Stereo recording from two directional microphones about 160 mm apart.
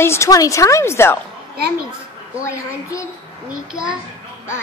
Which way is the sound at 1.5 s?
80° right.